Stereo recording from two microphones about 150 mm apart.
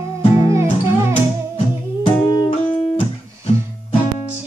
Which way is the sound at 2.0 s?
30° left (ahead or behind).